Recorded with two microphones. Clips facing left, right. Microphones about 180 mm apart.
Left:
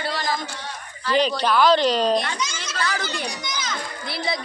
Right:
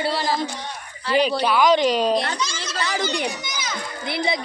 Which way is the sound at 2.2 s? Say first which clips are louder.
Right 2 dB; 35° right (ahead or behind).